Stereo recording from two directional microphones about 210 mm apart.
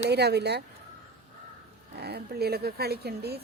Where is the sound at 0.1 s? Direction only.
50° right (ahead or behind).